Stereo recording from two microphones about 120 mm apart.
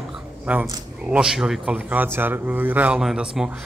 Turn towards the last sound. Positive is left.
turn(degrees=-5)  # may be behind; listen again after turning